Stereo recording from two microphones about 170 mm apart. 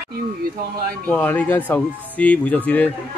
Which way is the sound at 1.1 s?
10° left (ahead or behind).